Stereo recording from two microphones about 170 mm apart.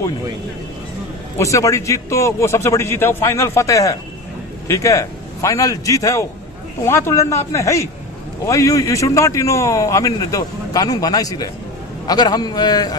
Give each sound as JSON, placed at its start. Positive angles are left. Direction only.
{"t": 1.4, "sound": "a man's voice", "side_deg": 20}